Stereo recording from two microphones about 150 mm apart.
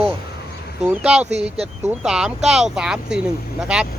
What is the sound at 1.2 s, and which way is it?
Speech, 45° right (ahead or behind).